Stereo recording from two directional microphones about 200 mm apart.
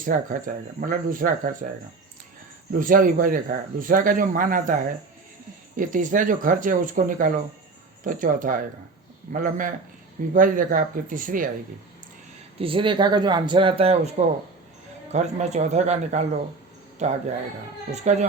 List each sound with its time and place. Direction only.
0.0 s speech: 40° right (ahead or behind)
2.7 s speech: 45° right (ahead or behind)
12.5 s speech: 25° right (ahead or behind)